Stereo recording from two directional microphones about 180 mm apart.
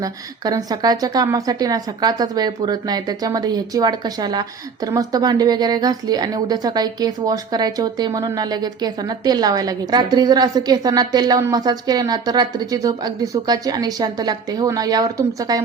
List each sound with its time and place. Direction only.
0.0 s a woman's voice: 20° right (ahead or behind)